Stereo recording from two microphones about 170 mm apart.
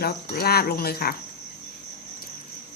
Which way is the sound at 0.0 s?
65° left (ahead or behind).